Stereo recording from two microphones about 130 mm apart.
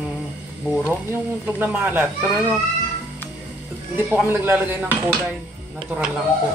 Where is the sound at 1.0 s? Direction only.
15° right (ahead or behind).